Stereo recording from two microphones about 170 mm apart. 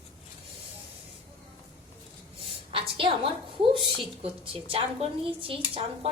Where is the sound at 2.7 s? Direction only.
30° right (ahead or behind).